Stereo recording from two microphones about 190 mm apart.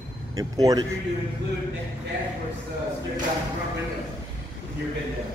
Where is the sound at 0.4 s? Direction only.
20° right (ahead or behind).